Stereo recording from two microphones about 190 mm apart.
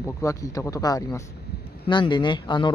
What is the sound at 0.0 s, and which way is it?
Speech, 15° left (ahead or behind).